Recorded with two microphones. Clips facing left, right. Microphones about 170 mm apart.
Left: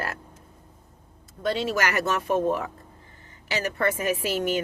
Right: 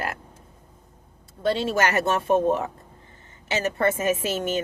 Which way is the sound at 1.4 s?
25° right (ahead or behind).